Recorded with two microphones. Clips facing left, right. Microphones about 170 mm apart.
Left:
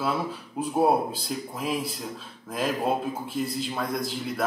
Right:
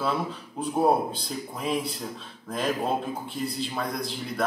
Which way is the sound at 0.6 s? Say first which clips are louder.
Even; 5° left (ahead or behind).